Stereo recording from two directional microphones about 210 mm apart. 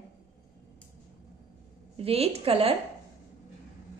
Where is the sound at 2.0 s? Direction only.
30° right (ahead or behind).